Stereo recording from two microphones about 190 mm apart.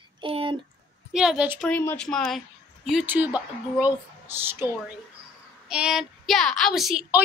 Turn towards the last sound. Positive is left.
turn(degrees=-5)  # may be behind; listen again after turning